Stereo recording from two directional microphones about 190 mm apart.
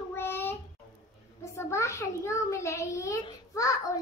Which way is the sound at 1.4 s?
15° left (ahead or behind).